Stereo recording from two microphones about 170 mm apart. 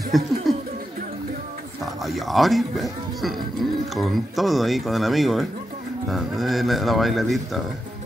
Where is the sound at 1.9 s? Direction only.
Centre (ahead or behind).